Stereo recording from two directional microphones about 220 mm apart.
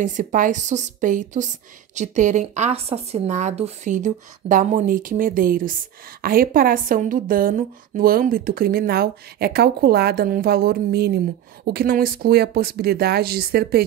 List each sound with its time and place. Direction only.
0.0 s a woman's voice: 35° right (ahead or behind)